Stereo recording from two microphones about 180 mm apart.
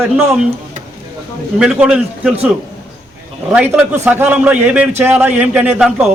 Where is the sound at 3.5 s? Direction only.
5° right (ahead or behind).